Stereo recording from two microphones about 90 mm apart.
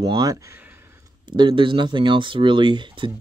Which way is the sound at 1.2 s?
65° right (ahead or behind).